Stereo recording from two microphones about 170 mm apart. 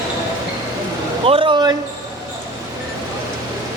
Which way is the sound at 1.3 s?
30° right (ahead or behind).